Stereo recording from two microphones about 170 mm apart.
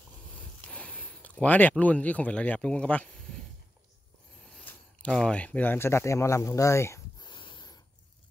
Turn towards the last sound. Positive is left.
turn(degrees=25)  # may be behind; listen again after turning